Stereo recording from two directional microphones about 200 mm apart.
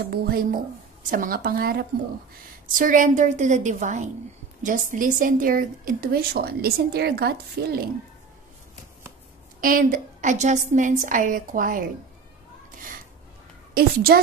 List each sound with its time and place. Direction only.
0.1 s a woman's voice: 50° right (ahead or behind)
9.6 s a woman's voice: 45° right (ahead or behind)
13.7 s a woman's voice: 45° right (ahead or behind)